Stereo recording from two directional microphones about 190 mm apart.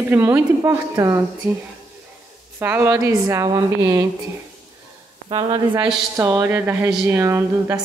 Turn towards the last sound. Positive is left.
turn(degrees=-15)  # may be behind; listen again after turning